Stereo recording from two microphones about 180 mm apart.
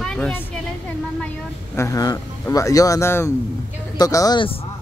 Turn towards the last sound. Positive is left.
turn(degrees=25)  # may be behind; listen again after turning